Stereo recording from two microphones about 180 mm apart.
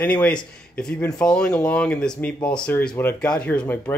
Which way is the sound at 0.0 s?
5° left (ahead or behind).